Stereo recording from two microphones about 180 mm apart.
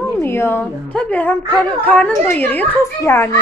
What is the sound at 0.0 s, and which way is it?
A woman's voice, 15° left (ahead or behind).